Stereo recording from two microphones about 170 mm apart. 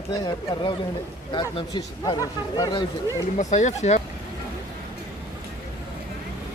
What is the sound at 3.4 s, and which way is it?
Speech, 45° left (ahead or behind).